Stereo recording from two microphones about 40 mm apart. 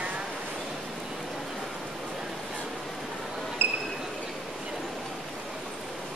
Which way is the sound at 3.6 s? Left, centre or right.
Right.